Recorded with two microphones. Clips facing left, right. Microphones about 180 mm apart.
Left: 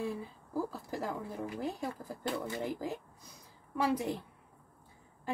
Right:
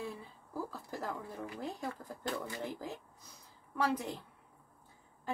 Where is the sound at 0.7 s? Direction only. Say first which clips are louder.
Left 3 dB; 10° left (ahead or behind).